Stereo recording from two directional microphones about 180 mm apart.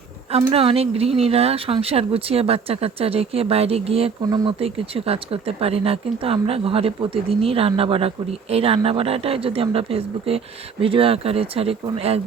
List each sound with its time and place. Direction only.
0.3 s speech: 30° right (ahead or behind)
4.2 s speech: 20° right (ahead or behind)